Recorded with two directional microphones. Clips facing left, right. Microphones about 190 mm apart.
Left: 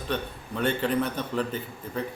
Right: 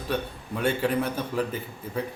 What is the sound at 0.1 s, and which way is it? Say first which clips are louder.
A man's voice: right 2 dB; 10° right (ahead or behind).